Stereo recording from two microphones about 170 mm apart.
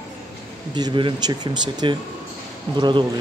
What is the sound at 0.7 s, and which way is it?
Speech, 25° right (ahead or behind).